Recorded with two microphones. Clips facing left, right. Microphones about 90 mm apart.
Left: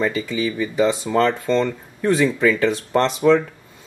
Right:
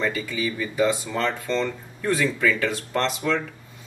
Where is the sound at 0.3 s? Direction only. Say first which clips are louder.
Left 5 dB; 20° left (ahead or behind).